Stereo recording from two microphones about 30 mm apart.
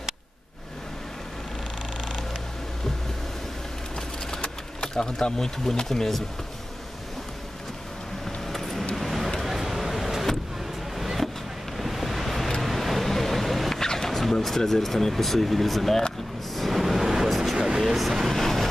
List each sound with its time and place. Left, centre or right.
2.0 s purr: centre
4.8 s speech: left
8.5 s vehicle: centre
11.7 s waves: centre
12.6 s vehicle: centre
13.7 s a sound: centre
14.3 s speech: centre
16.5 s a sound: centre
17.7 s vehicle: centre
18.3 s vehicle: centre